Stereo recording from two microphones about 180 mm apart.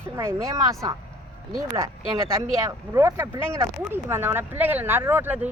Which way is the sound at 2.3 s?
15° right (ahead or behind).